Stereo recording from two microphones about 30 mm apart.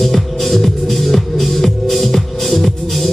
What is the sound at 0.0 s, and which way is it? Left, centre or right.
Music, centre.